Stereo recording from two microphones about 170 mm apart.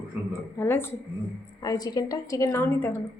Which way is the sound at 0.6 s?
15° left (ahead or behind).